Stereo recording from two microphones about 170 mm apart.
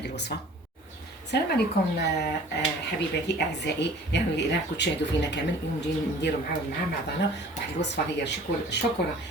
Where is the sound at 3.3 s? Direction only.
90° left.